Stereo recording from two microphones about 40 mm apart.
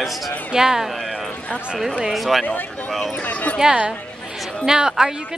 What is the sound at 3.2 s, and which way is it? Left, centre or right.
Speech, left.